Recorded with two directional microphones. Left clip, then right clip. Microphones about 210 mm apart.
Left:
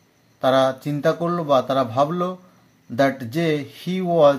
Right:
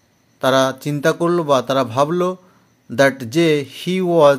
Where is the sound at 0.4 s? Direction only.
35° right (ahead or behind).